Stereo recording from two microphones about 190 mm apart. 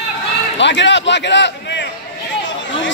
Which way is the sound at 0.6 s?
70° left (ahead or behind).